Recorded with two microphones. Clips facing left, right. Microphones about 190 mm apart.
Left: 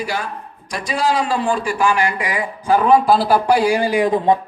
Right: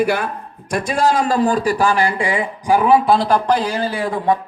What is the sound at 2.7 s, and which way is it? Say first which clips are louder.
A man's voice: even; 5° right (ahead or behind).